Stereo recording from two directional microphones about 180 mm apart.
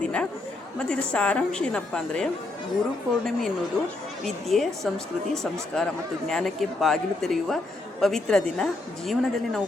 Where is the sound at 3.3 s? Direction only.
Centre (ahead or behind).